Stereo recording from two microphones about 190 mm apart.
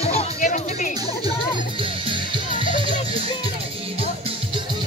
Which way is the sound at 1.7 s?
25° right (ahead or behind).